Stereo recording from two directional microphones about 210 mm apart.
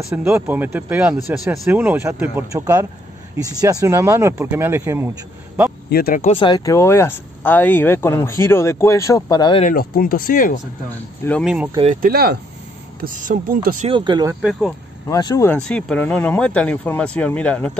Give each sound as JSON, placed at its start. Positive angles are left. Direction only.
{"t": 0.1, "sound": "speech", "side_deg": -10}
{"t": 5.9, "sound": "speech", "side_deg": 45}
{"t": 6.3, "sound": "speech", "side_deg": 20}
{"t": 9.7, "sound": "speech", "side_deg": 45}
{"t": 11.2, "sound": "speech", "side_deg": 5}
{"t": 11.9, "sound": "speech", "side_deg": -45}
{"t": 13.8, "sound": "speech", "side_deg": -20}
{"t": 14.4, "sound": "speech", "side_deg": 0}
{"t": 15.0, "sound": "speech", "side_deg": 15}